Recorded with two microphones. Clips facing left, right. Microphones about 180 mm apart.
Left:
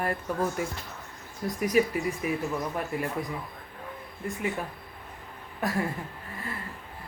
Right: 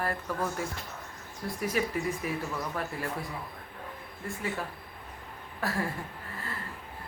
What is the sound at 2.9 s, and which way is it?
Speech, 15° left (ahead or behind).